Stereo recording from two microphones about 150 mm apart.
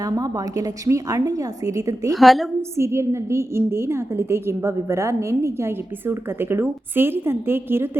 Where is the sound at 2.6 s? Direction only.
20° right (ahead or behind).